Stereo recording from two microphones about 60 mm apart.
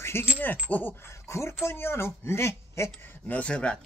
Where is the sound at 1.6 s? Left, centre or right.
Left.